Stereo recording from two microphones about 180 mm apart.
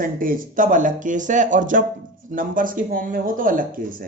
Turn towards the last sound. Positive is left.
turn(degrees=-50)  # may be behind; listen again after turning